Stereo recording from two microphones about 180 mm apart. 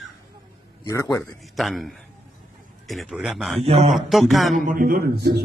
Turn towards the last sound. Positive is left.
turn(degrees=-60)  # may be behind; listen again after turning